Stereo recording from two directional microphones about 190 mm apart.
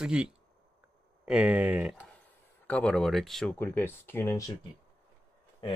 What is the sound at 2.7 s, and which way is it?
Speech, 5° left (ahead or behind).